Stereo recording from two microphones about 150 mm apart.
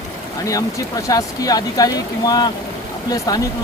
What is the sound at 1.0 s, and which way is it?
Speech, 25° left (ahead or behind).